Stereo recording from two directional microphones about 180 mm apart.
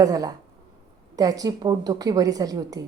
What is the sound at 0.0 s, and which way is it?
A woman's voice, 20° right (ahead or behind).